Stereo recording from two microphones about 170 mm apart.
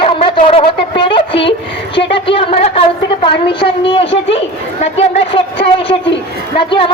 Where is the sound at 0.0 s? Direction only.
30° left (ahead or behind).